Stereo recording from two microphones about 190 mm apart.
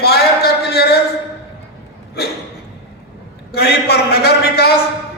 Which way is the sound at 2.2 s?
55° left (ahead or behind).